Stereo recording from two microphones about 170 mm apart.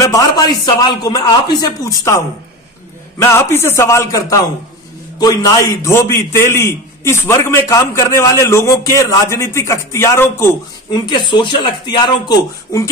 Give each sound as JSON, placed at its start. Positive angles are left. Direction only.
{"t": 0.0, "sound": "a man's voice", "side_deg": 20}
{"t": 11.1, "sound": "a man's voice", "side_deg": 25}